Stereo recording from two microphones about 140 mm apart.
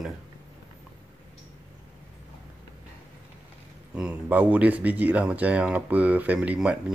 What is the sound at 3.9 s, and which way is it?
Speech, 10° right (ahead or behind).